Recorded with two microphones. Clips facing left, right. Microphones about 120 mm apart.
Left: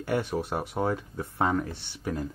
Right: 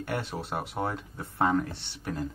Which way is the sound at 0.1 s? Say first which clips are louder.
Left 6 dB; 15° left (ahead or behind).